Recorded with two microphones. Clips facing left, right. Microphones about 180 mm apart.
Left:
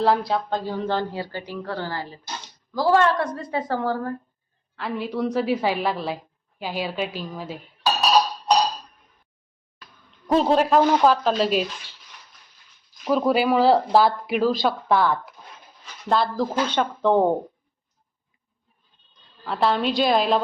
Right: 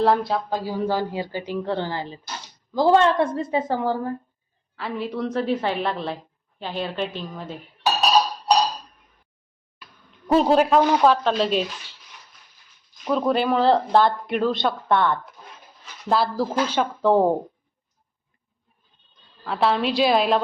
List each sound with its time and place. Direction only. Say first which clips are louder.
0.0 s a woman's voice: right 1 dB; centre (ahead or behind); by 4.1 s 15° right (ahead or behind)
4.8 s speech: left 1 dB; centre (ahead or behind)
10.3 s speech: right 1 dB; centre (ahead or behind)
13.1 s speech: left 1 dB; 5° left (ahead or behind)
19.5 s speech: even; centre (ahead or behind)